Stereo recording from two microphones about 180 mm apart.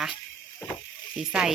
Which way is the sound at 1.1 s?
5° right (ahead or behind).